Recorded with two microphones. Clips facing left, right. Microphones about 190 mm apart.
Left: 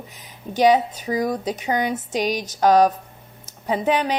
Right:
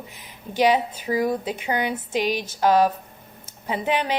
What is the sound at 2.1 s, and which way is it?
A woman's voice, 45° left (ahead or behind).